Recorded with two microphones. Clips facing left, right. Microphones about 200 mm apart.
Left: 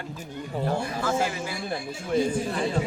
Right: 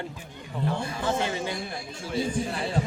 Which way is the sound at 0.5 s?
40° left (ahead or behind).